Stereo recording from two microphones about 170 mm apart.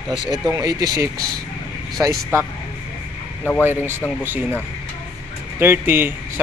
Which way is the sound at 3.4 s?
10° left (ahead or behind).